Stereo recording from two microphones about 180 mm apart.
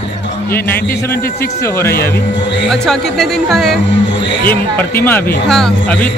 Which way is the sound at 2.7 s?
Centre (ahead or behind).